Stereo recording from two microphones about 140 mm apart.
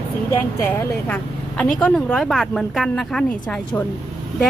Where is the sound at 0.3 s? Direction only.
15° left (ahead or behind).